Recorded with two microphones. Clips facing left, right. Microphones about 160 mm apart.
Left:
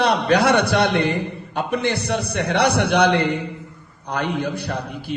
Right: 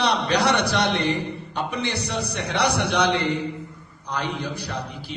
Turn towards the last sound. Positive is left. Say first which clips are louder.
# left 5 dB
turn(degrees=55)  # may be behind; listen again after turning